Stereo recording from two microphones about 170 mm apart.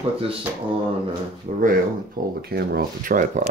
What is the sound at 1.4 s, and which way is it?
Speech, 55° right (ahead or behind).